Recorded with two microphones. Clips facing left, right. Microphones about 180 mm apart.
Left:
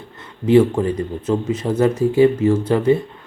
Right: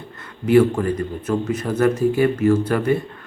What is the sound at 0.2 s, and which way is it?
A man's voice, 25° left (ahead or behind).